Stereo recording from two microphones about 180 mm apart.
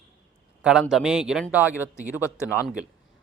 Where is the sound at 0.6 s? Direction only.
Centre (ahead or behind).